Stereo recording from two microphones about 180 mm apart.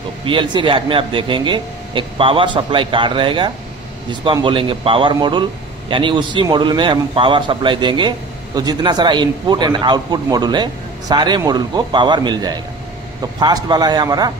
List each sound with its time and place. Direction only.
0.2 s a man's voice: 25° right (ahead or behind)